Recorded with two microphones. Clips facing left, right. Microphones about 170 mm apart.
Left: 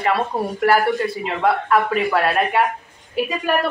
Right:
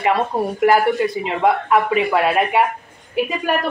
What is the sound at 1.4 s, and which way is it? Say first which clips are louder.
Speech: right 1 dB; 15° right (ahead or behind).